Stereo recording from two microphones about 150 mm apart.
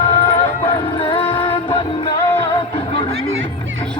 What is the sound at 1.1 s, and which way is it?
Music, 35° left (ahead or behind).